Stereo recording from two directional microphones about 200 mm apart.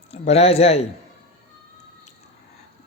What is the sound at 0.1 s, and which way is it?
Speech, 30° left (ahead or behind).